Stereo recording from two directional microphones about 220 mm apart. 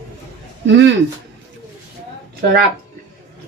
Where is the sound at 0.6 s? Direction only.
55° right (ahead or behind).